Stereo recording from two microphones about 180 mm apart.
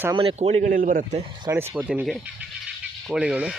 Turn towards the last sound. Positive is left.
turn(degrees=-5)  # may be behind; listen again after turning